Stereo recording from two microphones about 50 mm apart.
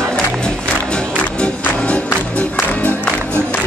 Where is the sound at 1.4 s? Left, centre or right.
Left.